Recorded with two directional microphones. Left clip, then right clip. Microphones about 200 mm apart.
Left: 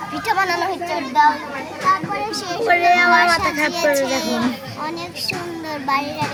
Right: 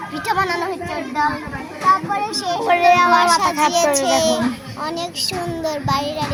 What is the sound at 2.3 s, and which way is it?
Speech, 30° right (ahead or behind).